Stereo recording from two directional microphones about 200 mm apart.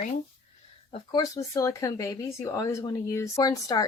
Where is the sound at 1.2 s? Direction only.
15° left (ahead or behind).